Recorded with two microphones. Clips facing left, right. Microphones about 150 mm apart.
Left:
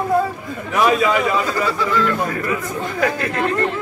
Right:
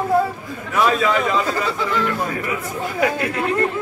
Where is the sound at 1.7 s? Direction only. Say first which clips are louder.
Left 2 dB; 20° right (ahead or behind).